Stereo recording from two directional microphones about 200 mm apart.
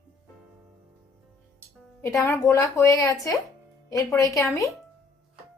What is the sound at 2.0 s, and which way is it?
Speech, 15° left (ahead or behind).